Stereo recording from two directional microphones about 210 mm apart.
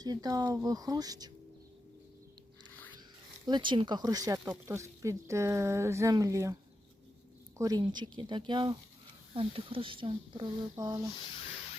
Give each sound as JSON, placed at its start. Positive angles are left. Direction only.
{"t": 0.0, "sound": "speech", "side_deg": -20}
{"t": 3.4, "sound": "speech", "side_deg": -20}
{"t": 7.6, "sound": "speech", "side_deg": -20}